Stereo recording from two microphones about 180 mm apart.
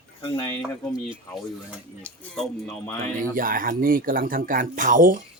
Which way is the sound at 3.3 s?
50° right (ahead or behind).